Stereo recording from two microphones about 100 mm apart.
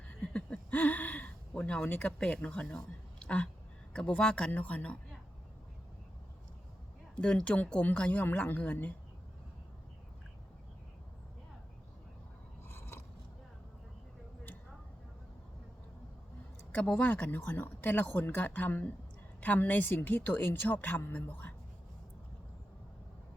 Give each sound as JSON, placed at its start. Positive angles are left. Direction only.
{"t": 0.2, "sound": "speech", "side_deg": 10}
{"t": 7.2, "sound": "speech", "side_deg": 10}
{"t": 12.6, "sound": "scrape", "side_deg": 25}
{"t": 16.7, "sound": "speech", "side_deg": 15}